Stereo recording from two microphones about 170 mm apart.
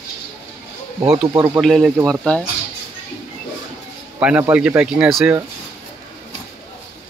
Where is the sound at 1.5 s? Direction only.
Centre (ahead or behind).